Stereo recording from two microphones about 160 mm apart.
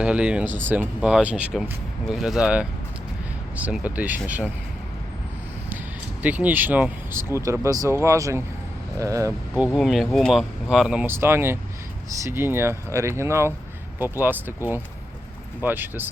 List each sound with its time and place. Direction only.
0.0 s speech: 5° right (ahead or behind)
6.2 s speech: 10° right (ahead or behind)
9.7 s speech: centre (ahead or behind)